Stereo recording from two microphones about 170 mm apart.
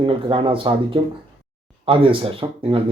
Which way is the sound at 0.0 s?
30° right (ahead or behind).